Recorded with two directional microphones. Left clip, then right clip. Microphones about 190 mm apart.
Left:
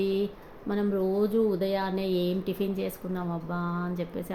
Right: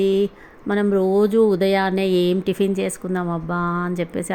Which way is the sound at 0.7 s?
50° right (ahead or behind).